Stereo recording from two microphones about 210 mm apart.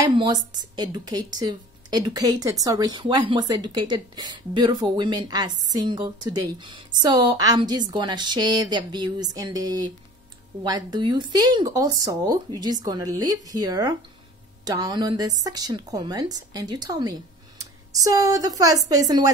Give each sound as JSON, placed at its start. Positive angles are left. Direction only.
{"t": 0.6, "sound": "a woman's voice", "side_deg": -20}